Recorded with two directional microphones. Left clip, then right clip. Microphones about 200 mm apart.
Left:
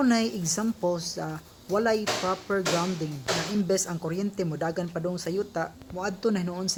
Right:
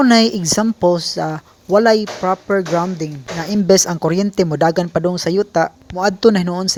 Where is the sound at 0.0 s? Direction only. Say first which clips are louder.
Right 13 dB; 40° right (ahead or behind).